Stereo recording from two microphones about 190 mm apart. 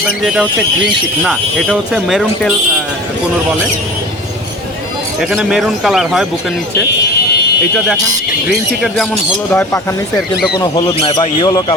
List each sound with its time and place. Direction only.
1.2 s speech: centre (ahead or behind)
5.2 s speech: 5° right (ahead or behind)
9.5 s speech: 10° left (ahead or behind)
10.6 s speech: 25° left (ahead or behind)